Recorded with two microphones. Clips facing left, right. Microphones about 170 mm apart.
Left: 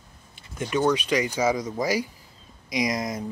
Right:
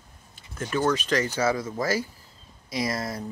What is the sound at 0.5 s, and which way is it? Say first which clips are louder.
Speech: left 2 dB; 10° left (ahead or behind).